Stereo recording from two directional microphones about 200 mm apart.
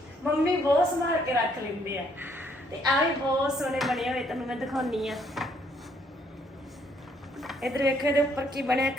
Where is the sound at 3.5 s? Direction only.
Centre (ahead or behind).